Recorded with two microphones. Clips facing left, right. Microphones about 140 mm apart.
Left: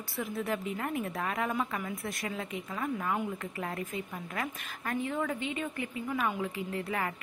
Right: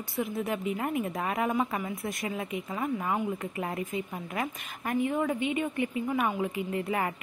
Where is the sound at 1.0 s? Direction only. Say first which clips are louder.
Right 3 dB; 20° right (ahead or behind).